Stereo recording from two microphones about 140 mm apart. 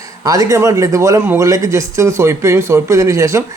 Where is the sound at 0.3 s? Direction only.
25° right (ahead or behind).